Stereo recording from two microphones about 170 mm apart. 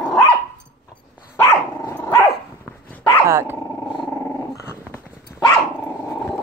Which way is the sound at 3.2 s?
15° right (ahead or behind).